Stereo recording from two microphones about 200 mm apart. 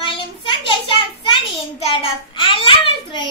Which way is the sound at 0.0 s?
25° left (ahead or behind).